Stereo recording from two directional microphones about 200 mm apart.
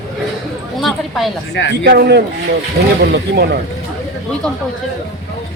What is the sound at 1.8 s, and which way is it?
A man's voice, 55° right (ahead or behind).